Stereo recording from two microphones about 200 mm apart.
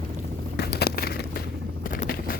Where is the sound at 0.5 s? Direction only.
50° left (ahead or behind).